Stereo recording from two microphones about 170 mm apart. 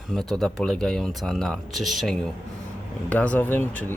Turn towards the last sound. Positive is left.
turn(degrees=10)  # may be behind; listen again after turning